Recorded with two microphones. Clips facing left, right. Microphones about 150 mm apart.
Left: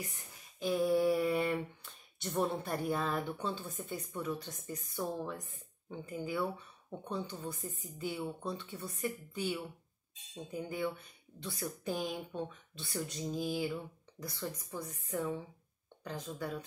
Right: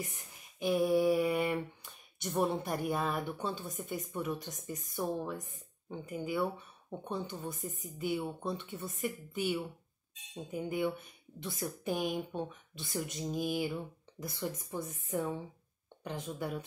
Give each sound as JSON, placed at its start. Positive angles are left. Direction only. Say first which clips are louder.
{"t": 0.6, "sound": "speech", "louder": "right 2 dB", "side_deg": -15}
{"t": 2.2, "sound": "speech", "louder": "right 2 dB", "side_deg": 0}
{"t": 2.5, "sound": "speech", "louder": "right 1 dB", "side_deg": -15}